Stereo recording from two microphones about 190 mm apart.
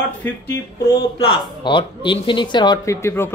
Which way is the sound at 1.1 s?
25° left (ahead or behind).